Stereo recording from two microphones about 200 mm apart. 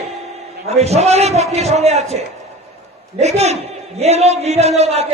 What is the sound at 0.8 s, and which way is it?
A man's voice, 35° right (ahead or behind).